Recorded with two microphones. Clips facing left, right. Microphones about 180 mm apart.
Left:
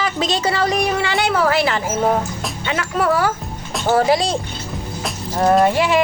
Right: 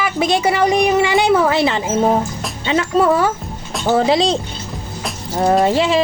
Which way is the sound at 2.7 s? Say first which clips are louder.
Right 5 dB; 25° right (ahead or behind).